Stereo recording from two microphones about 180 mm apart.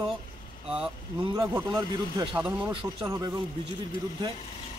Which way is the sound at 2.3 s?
5° right (ahead or behind).